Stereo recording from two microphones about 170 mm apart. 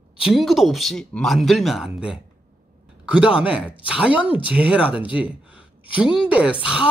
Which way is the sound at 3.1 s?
5° right (ahead or behind).